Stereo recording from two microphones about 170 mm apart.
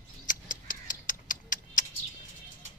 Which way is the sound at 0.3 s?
50° left (ahead or behind).